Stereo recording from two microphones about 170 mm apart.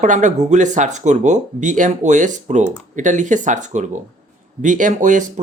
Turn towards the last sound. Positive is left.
turn(degrees=-50)  # may be behind; listen again after turning